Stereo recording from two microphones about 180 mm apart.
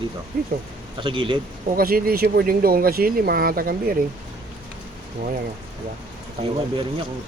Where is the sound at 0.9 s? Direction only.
30° right (ahead or behind).